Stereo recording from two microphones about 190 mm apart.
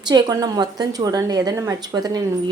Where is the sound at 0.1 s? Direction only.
20° right (ahead or behind).